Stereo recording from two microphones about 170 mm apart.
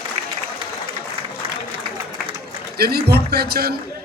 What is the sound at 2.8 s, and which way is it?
Speech, 70° right (ahead or behind).